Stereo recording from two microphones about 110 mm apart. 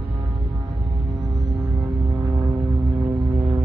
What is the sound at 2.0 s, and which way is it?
Vehicle, 25° right (ahead or behind).